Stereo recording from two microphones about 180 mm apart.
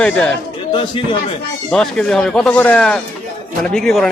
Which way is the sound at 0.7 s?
25° left (ahead or behind).